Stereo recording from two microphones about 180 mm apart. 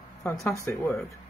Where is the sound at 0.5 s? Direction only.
15° left (ahead or behind).